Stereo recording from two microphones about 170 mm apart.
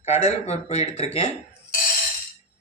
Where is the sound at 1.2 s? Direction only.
45° left (ahead or behind).